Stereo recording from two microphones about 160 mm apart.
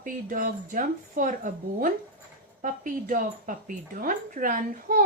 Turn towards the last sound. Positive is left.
turn(degrees=-55)  # may be behind; listen again after turning